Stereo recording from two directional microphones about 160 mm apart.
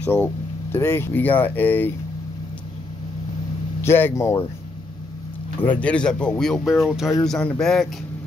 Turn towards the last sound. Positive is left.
turn(degrees=5)  # may be behind; listen again after turning